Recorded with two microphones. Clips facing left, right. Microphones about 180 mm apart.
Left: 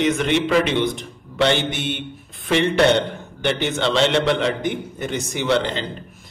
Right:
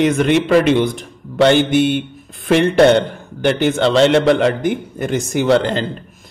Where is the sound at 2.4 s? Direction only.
50° right (ahead or behind).